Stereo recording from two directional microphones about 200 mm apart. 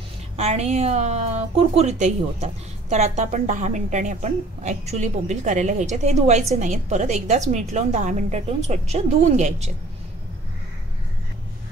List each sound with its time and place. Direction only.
0.4 s a woman's voice: 35° right (ahead or behind)